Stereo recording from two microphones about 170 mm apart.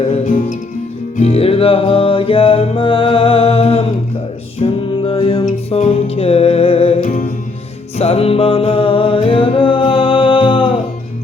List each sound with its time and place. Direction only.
0.1 s music: 50° left (ahead or behind)
1.1 s music: 40° left (ahead or behind)
5.5 s music: 40° left (ahead or behind)